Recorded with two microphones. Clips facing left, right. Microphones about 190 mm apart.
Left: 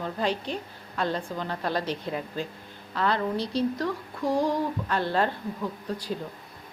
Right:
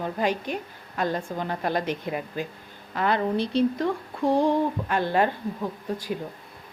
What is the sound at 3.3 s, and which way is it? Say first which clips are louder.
Speech: right 4 dB; 55° right (ahead or behind).